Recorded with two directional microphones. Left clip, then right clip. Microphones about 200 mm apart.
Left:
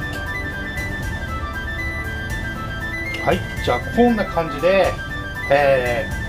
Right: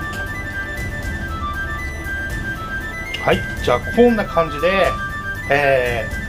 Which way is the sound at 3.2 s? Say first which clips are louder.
Right 3 dB; 20° right (ahead or behind).